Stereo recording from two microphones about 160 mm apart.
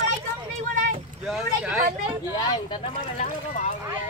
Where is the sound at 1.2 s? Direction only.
5° right (ahead or behind).